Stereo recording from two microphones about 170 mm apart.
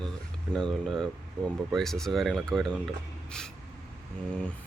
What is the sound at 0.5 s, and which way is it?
Speech, 5° left (ahead or behind).